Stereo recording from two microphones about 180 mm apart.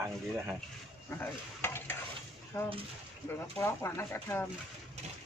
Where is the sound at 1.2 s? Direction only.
10° left (ahead or behind).